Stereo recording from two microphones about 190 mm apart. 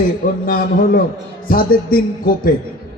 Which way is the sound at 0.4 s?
45° left (ahead or behind).